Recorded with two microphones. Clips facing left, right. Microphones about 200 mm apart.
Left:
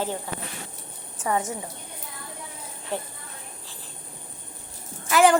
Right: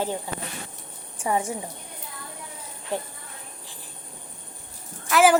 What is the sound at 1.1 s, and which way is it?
Speech, 15° right (ahead or behind).